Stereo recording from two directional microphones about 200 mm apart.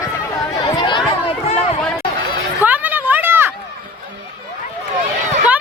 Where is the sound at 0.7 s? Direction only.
25° left (ahead or behind).